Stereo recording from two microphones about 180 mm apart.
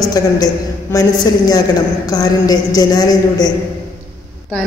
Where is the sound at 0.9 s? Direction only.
20° left (ahead or behind).